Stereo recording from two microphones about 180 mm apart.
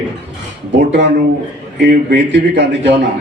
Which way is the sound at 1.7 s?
70° right (ahead or behind).